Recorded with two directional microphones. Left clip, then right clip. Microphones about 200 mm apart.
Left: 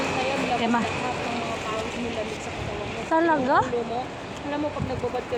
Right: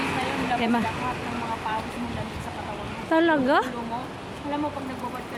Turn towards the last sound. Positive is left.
turn(degrees=-40)  # may be behind; listen again after turning